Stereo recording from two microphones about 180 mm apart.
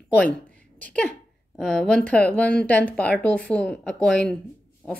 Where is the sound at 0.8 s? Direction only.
5° left (ahead or behind).